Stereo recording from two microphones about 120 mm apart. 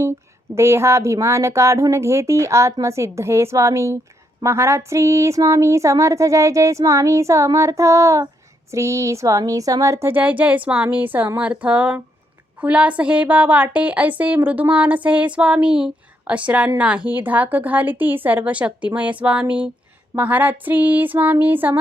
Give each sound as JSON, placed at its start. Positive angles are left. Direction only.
{"t": 0.0, "sound": "a woman's voice", "side_deg": -20}